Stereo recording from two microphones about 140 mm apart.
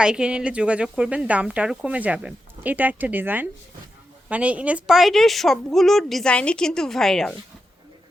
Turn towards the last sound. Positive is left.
turn(degrees=5)  # may be behind; listen again after turning